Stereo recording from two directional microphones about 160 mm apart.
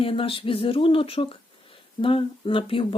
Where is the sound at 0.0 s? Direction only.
35° left (ahead or behind).